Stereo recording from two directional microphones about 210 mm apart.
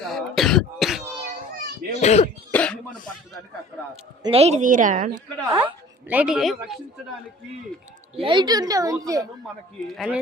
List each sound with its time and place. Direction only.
0.0 s throat clearing: centre (ahead or behind)
2.0 s speech: 30° left (ahead or behind)
2.5 s speech: 5° left (ahead or behind)
4.2 s a woman's voice: 30° right (ahead or behind)
5.1 s speech: 15° right (ahead or behind); by 6.7 s centre (ahead or behind)
8.1 s speech: 25° right (ahead or behind)
9.8 s speech: centre (ahead or behind)